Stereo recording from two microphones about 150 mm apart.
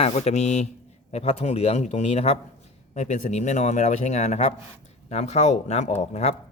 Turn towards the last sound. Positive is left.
turn(degrees=45)  # may be behind; listen again after turning